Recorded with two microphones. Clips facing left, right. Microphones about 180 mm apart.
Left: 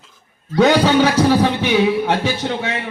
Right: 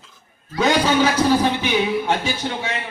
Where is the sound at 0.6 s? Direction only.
65° left (ahead or behind).